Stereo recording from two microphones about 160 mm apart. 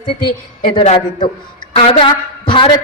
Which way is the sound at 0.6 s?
40° left (ahead or behind).